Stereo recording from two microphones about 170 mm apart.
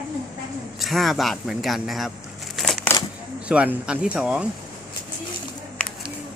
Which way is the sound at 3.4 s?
5° right (ahead or behind).